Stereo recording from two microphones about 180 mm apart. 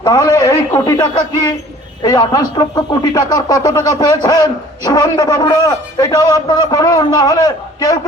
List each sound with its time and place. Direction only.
0.0 s speech: 20° left (ahead or behind)